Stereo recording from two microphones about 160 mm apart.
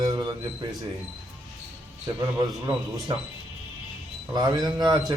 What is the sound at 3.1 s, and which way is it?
Speech, 30° right (ahead or behind).